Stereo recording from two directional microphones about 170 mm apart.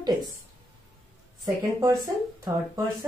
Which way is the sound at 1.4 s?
20° right (ahead or behind).